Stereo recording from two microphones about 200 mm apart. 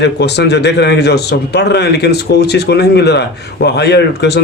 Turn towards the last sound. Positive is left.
turn(degrees=55)  # may be behind; listen again after turning